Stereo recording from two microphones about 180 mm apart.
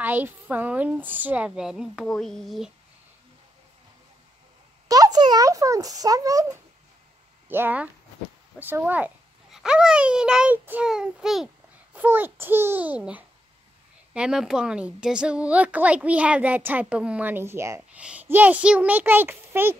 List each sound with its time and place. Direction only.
0.0 s a woman's voice: 10° right (ahead or behind)
4.8 s a child's voice: 20° right (ahead or behind)
7.4 s a child's voice: 10° right (ahead or behind)